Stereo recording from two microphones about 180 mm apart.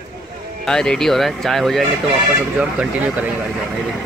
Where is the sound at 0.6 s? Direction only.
5° left (ahead or behind).